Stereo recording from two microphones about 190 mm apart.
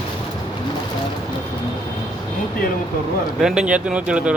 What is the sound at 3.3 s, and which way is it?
Speech, 5° right (ahead or behind).